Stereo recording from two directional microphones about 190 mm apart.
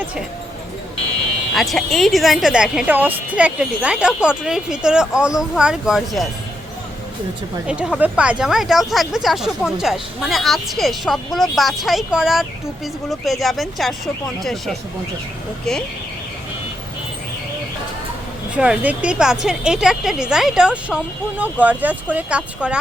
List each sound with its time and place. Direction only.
1.5 s speech: centre (ahead or behind)
7.7 s speech: 5° right (ahead or behind)
18.5 s speech: 5° right (ahead or behind)